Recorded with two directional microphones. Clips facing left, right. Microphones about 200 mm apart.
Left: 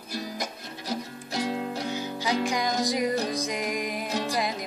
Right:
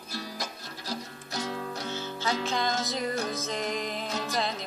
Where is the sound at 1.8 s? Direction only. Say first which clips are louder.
Even; 15° left (ahead or behind).